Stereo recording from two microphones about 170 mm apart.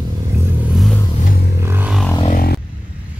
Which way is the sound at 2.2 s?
55° left (ahead or behind).